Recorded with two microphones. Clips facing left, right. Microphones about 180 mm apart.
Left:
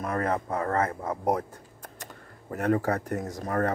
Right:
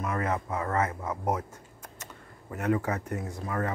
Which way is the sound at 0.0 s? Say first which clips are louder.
Left 2 dB; 35° left (ahead or behind).